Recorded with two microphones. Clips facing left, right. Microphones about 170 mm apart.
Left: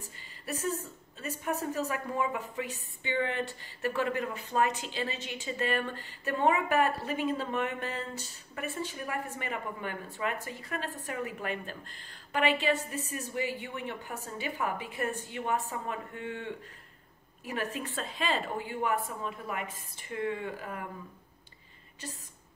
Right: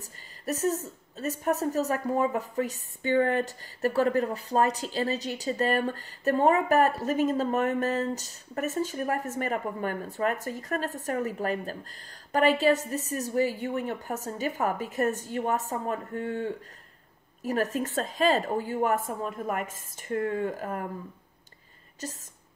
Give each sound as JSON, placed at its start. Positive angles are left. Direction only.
{"t": 0.0, "sound": "a woman's voice", "side_deg": -40}
{"t": 22.0, "sound": "a woman's voice", "side_deg": -40}